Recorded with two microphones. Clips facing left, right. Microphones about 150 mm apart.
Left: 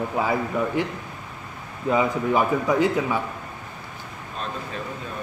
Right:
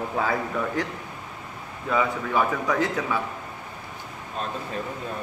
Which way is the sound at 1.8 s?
15° left (ahead or behind).